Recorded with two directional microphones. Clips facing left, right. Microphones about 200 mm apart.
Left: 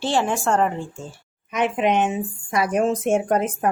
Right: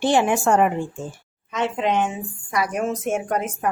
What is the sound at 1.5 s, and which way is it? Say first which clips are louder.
Speech: left 2 dB; 15° left (ahead or behind).